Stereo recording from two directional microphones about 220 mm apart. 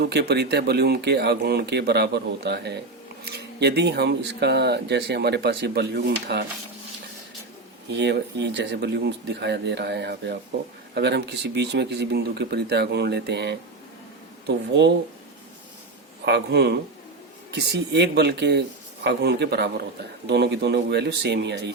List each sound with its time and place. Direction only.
0.0 s speech: 50° right (ahead or behind)
7.9 s speech: 50° right (ahead or behind)
16.2 s speech: 50° right (ahead or behind)